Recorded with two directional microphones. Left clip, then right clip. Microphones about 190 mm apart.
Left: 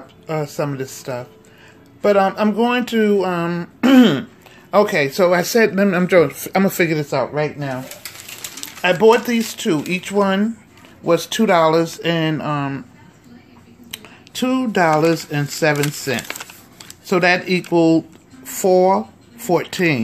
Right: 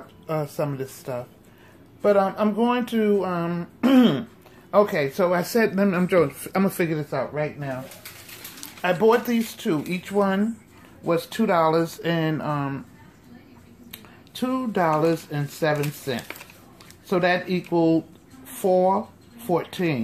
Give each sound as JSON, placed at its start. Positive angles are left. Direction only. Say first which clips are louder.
{"t": 0.3, "sound": "speech", "louder": "left 4 dB", "side_deg": 10}
{"t": 8.8, "sound": "speech", "louder": "left 6 dB", "side_deg": 15}
{"t": 13.8, "sound": "speech", "louder": "left 10 dB", "side_deg": 20}